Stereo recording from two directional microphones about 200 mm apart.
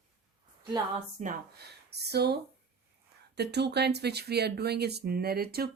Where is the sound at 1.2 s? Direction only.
50° right (ahead or behind).